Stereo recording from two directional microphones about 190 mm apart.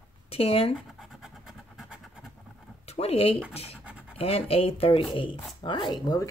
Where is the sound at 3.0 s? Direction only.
30° left (ahead or behind).